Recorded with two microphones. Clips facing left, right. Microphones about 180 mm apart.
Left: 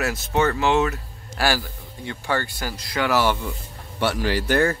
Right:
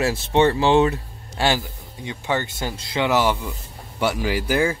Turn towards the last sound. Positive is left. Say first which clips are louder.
# left 1 dB
turn(degrees=-5)  # may be behind; listen again after turning